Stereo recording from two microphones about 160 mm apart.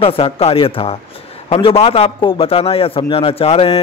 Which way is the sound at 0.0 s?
35° left (ahead or behind).